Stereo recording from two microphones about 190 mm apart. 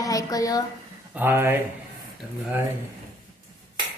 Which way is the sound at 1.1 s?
10° right (ahead or behind).